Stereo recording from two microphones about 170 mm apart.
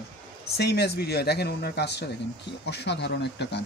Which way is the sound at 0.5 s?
75° left (ahead or behind).